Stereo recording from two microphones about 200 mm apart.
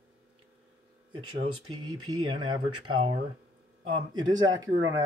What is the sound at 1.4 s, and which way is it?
Speech, 90° right.